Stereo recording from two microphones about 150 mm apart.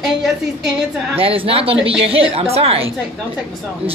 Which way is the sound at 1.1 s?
40° right (ahead or behind).